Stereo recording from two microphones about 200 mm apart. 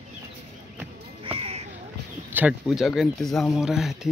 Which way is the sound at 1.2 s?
30° right (ahead or behind).